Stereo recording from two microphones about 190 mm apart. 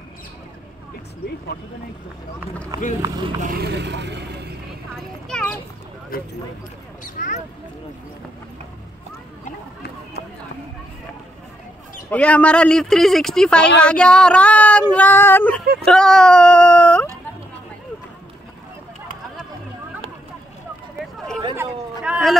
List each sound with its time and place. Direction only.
2.7 s speech: 20° right (ahead or behind)
3.4 s speech: 55° right (ahead or behind)
5.3 s child singing: 10° left (ahead or behind)
6.1 s speech: 50° left (ahead or behind)
12.1 s speech: 5° left (ahead or behind)
13.7 s child singing: 5° left (ahead or behind)
15.8 s speech: 5° left (ahead or behind)
21.5 s a sound: 5° right (ahead or behind)